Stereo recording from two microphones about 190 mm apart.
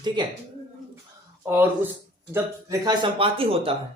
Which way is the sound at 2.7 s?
25° right (ahead or behind).